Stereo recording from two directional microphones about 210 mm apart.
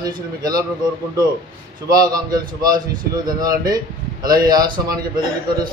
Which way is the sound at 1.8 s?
20° right (ahead or behind).